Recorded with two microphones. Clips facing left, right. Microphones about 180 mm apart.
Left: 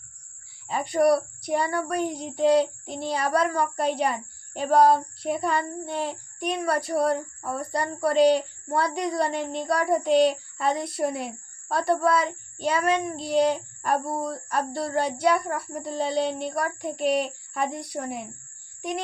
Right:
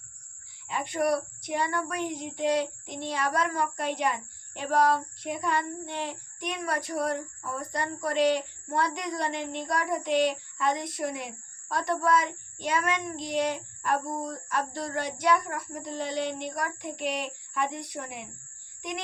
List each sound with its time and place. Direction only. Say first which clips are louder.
0.7 s speech: left 6 dB; 35° left (ahead or behind)